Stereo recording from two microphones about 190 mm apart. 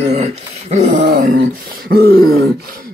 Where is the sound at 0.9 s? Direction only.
60° right (ahead or behind).